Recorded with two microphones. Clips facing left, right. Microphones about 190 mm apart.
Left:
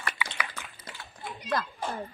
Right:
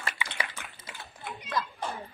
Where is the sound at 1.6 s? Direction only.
60° left (ahead or behind).